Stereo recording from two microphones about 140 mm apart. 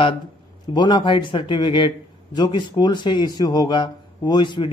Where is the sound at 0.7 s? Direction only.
35° left (ahead or behind).